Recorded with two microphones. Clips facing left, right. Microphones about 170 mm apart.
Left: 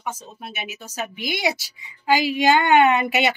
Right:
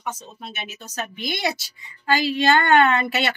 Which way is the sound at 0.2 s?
5° left (ahead or behind).